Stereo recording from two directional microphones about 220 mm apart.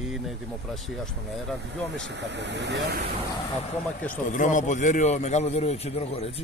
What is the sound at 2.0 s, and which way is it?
Speech, 55° right (ahead or behind).